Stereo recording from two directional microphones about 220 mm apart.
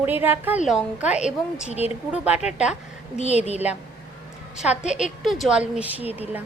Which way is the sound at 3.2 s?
30° left (ahead or behind).